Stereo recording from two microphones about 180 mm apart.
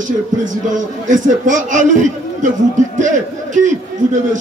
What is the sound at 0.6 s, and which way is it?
A man's voice, 45° right (ahead or behind).